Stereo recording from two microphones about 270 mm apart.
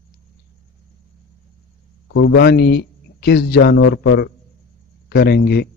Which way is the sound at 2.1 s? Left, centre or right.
Left.